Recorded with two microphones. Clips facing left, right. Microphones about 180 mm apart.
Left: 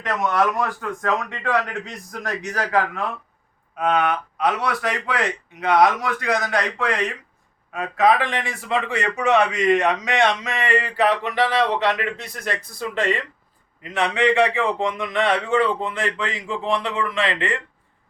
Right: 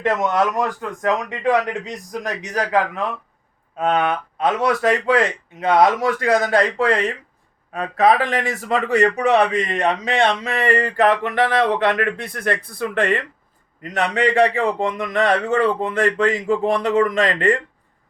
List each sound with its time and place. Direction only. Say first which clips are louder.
0.8 s a man's voice: right 3 dB; 20° right (ahead or behind); by 13.2 s 55° right (ahead or behind)
13.8 s a man's voice: even; 40° right (ahead or behind)